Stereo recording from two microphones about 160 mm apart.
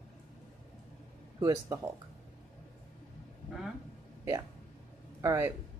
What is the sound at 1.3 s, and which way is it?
Speech, 20° right (ahead or behind).